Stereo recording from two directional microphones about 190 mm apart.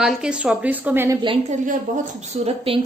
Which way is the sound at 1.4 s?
45° right (ahead or behind).